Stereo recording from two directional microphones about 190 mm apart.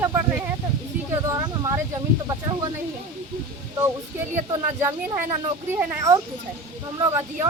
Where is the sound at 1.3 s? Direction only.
15° right (ahead or behind).